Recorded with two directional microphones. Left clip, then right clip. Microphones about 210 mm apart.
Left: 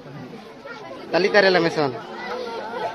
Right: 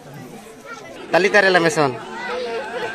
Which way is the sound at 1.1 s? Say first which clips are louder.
Right 3 dB; 20° right (ahead or behind).